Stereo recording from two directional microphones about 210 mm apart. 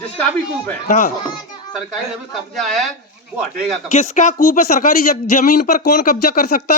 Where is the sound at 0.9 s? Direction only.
40° left (ahead or behind).